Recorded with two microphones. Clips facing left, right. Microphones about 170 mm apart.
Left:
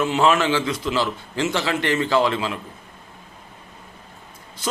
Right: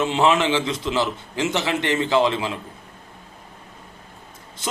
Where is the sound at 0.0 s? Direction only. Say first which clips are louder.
Even; 25° right (ahead or behind).